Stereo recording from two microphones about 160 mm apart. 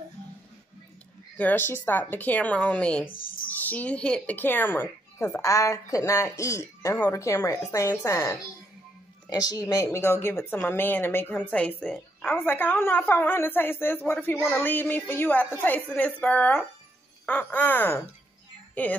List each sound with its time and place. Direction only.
1.3 s a woman's voice: 10° left (ahead or behind)